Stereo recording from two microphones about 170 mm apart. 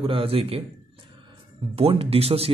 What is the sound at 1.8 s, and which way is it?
Speech, 35° right (ahead or behind).